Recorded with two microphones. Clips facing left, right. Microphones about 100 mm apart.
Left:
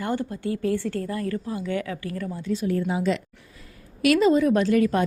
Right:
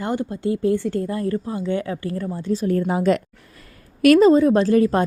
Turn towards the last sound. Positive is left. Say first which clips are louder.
# right 4 dB
turn(degrees=-30)  # may be behind; listen again after turning